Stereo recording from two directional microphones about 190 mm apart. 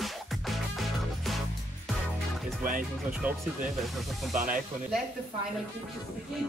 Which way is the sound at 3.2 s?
10° right (ahead or behind).